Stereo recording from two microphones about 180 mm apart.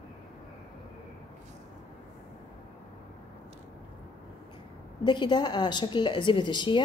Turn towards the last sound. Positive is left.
turn(degrees=25)  # may be behind; listen again after turning